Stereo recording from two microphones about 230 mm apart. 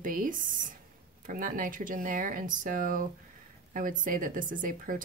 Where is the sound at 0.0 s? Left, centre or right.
Right.